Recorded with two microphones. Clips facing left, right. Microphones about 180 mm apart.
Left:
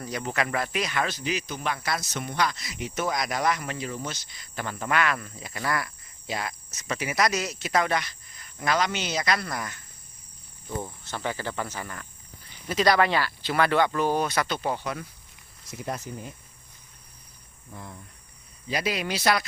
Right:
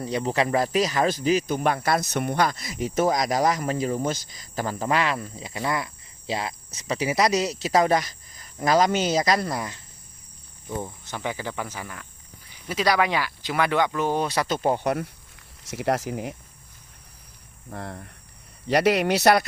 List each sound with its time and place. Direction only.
0.0 s speech: 30° right (ahead or behind)
5.5 s cricket: 20° right (ahead or behind)
6.7 s speech: 30° right (ahead or behind)
10.8 s speech: 15° right (ahead or behind); by 14.8 s 45° right (ahead or behind)
14.8 s speech: 65° right (ahead or behind)
15.7 s speech: 90° right
17.7 s speech: 75° right (ahead or behind)